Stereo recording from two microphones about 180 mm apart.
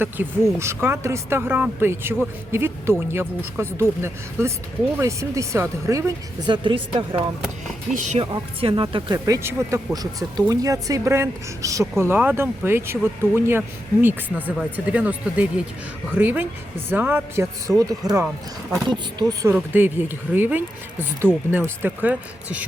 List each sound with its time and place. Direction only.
0.0 s speech: 15° right (ahead or behind)
7.9 s speech: 40° right (ahead or behind)
8.3 s speech: 25° right (ahead or behind)
19.3 s speech: 20° right (ahead or behind)